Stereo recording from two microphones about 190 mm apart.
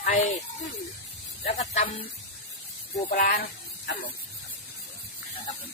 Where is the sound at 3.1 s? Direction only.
50° left (ahead or behind).